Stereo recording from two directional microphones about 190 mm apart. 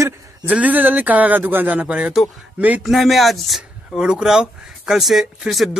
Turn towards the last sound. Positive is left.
turn(degrees=0)  # may be behind; listen again after turning